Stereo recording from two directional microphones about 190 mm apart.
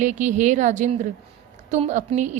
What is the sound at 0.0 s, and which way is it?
A woman's voice, 40° right (ahead or behind).